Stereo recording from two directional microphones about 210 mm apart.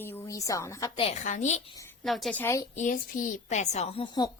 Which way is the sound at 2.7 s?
35° left (ahead or behind).